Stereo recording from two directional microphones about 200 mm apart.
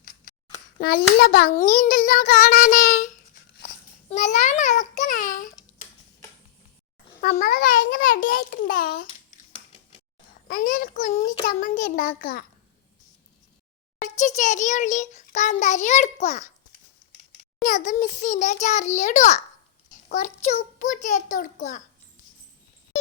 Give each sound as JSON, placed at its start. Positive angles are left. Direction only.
{"t": 0.8, "sound": "child singing", "side_deg": 50}
{"t": 4.1, "sound": "a child's voice", "side_deg": 35}
{"t": 7.2, "sound": "child singing", "side_deg": 45}
{"t": 10.5, "sound": "a child's voice", "side_deg": 45}
{"t": 14.0, "sound": "a child's voice", "side_deg": 35}
{"t": 17.6, "sound": "a child's voice", "side_deg": 40}